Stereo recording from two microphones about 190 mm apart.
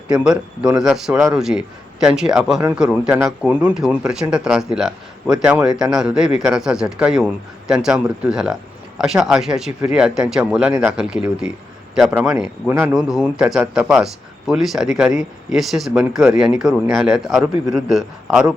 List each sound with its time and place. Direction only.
0.1 s speech: 5° right (ahead or behind)
15.1 s speech: 40° left (ahead or behind)
15.5 s speech: centre (ahead or behind)